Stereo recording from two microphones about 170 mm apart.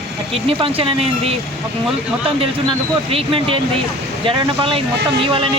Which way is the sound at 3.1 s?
35° right (ahead or behind).